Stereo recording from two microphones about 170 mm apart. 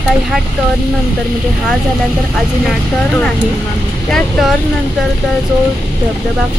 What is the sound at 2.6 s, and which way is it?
Speech, centre (ahead or behind).